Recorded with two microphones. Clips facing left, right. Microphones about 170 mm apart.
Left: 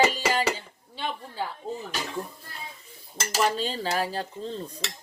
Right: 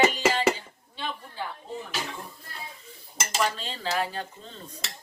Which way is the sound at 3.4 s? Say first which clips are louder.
Left 4 dB; 35° left (ahead or behind).